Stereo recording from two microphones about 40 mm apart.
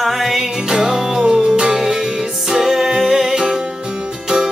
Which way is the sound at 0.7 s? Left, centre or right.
Centre.